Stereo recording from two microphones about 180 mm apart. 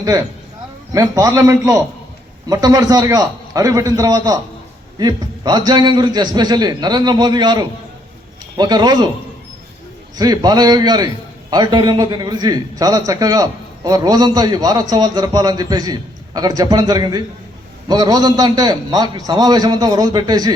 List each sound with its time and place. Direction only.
0.9 s a man's voice: 20° right (ahead or behind)
10.2 s a man's voice: 20° right (ahead or behind)